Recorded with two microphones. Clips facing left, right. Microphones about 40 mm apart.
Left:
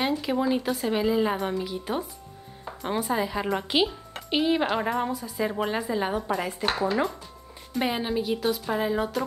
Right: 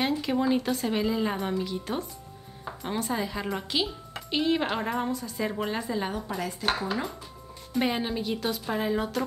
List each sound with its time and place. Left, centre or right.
0.0 s a woman's voice: centre
6.2 s speech: left
7.7 s a woman's voice: centre